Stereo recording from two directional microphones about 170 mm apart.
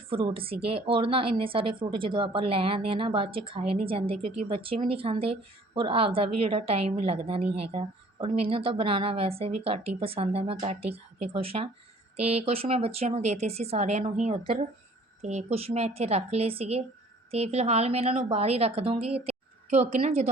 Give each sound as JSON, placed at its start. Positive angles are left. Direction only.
{"t": 0.1, "sound": "a woman's voice", "side_deg": -30}